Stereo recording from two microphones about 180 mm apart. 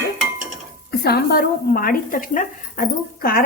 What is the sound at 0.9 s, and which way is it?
Speech, 60° left (ahead or behind).